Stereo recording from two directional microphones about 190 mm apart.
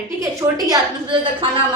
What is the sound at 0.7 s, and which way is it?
Speech, 25° right (ahead or behind).